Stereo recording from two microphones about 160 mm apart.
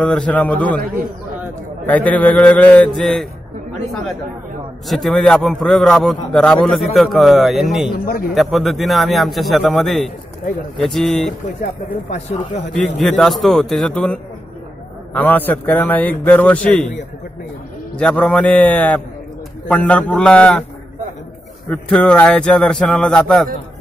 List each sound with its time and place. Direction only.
0.0 s a man's voice: 5° left (ahead or behind)
1.9 s a man's voice: 10° left (ahead or behind)
4.8 s a man's voice: centre (ahead or behind)
8.0 s speech: 65° left (ahead or behind)
8.4 s a man's voice: centre (ahead or behind)
12.1 s speech: 50° left (ahead or behind)
13.0 s a man's voice: centre (ahead or behind)
17.9 s a man's voice: 5° left (ahead or behind)
21.6 s a man's voice: 5° left (ahead or behind)